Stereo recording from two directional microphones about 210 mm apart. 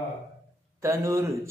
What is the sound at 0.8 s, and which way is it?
Mantra, 15° right (ahead or behind).